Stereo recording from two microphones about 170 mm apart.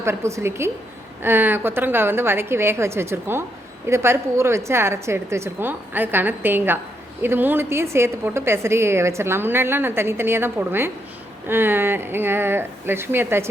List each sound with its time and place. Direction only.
0.0 s a woman's voice: 15° right (ahead or behind)